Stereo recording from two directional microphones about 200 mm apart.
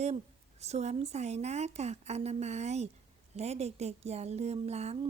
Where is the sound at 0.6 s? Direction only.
35° right (ahead or behind).